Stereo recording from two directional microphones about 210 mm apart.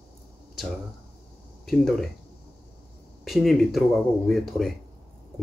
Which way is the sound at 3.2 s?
Centre (ahead or behind).